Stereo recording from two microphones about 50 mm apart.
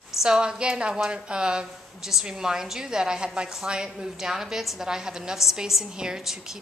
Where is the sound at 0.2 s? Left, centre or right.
Centre.